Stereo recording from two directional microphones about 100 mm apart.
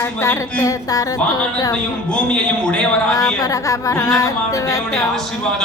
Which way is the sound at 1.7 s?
10° left (ahead or behind).